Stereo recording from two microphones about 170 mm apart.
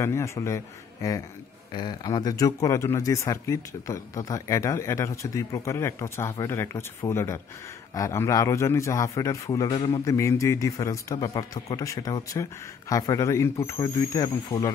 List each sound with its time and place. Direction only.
0.0 s a man's voice: 15° left (ahead or behind); by 10.0 s 30° left (ahead or behind)
10.0 s a man's voice: 20° left (ahead or behind)